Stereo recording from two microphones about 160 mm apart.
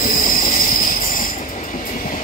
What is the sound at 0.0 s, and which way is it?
Train, 60° left (ahead or behind).